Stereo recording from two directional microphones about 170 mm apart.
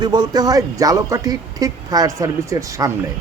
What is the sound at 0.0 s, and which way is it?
Speech, 25° right (ahead or behind).